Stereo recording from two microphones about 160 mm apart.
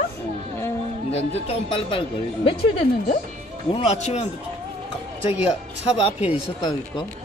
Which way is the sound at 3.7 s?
45° left (ahead or behind).